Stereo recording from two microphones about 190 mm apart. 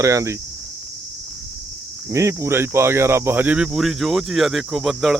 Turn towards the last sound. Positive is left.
turn(degrees=0)  # may be behind; listen again after turning